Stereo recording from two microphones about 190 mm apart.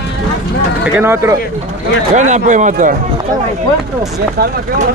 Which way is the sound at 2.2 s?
40° right (ahead or behind).